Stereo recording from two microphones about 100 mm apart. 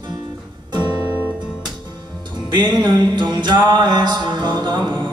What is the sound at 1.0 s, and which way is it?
Music, 25° right (ahead or behind).